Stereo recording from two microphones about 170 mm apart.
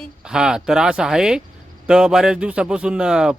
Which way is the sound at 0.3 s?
5° right (ahead or behind).